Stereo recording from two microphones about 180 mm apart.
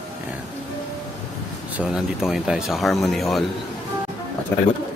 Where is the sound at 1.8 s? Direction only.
5° right (ahead or behind).